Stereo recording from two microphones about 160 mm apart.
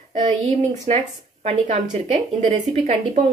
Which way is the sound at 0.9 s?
40° right (ahead or behind).